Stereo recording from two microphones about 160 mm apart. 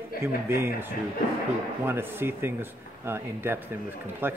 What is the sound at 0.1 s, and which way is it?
Speech, 65° left (ahead or behind).